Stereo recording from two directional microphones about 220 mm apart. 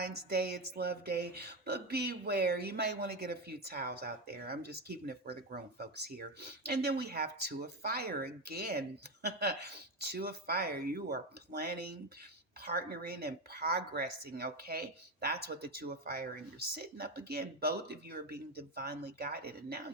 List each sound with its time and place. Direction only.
0.0 s speech: 45° right (ahead or behind)